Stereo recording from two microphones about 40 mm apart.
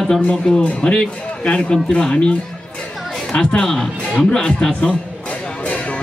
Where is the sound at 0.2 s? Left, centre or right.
Left.